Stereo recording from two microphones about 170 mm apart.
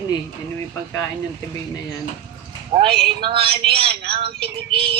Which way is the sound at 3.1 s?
30° right (ahead or behind).